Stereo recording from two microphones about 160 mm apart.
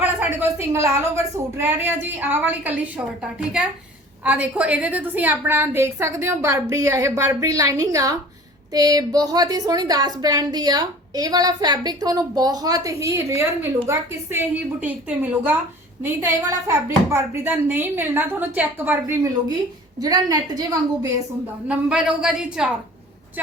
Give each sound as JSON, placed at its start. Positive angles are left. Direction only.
{"t": 0.0, "sound": "a woman's voice", "side_deg": -10}
{"t": 4.2, "sound": "a woman's voice", "side_deg": -10}
{"t": 21.7, "sound": "a woman's voice", "side_deg": -5}